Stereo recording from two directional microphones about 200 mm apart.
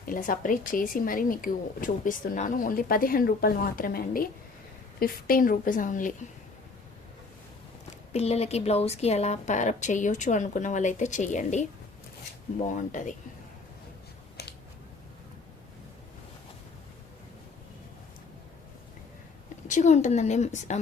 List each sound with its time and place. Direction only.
0.0 s speech: 45° left (ahead or behind)
8.1 s a woman's voice: 30° left (ahead or behind)
12.6 s a woman's voice: 40° left (ahead or behind)
14.4 s scissors: 55° left (ahead or behind)
19.6 s a woman's voice: 35° left (ahead or behind)